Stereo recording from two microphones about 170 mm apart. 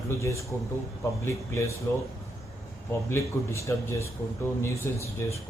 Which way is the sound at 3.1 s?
15° left (ahead or behind).